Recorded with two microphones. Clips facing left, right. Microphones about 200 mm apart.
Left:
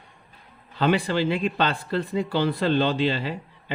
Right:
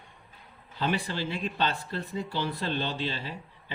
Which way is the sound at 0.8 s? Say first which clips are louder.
Left 8 dB; 90° left.